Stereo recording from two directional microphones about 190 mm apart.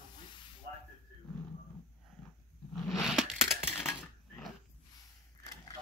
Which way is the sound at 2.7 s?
Centre (ahead or behind).